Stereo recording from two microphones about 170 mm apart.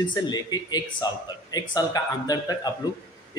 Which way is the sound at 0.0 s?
25° left (ahead or behind).